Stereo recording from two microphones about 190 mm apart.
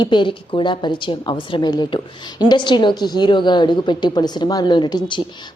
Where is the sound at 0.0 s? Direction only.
25° left (ahead or behind).